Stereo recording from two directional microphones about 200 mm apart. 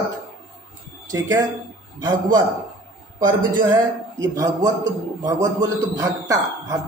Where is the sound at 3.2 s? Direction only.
20° right (ahead or behind).